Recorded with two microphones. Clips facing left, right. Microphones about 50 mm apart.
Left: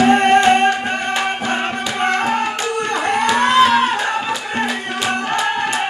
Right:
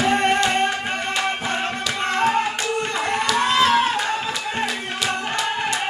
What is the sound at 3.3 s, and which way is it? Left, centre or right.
Music, left.